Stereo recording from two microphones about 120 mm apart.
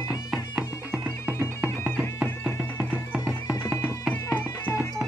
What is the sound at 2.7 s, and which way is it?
Music, 10° right (ahead or behind).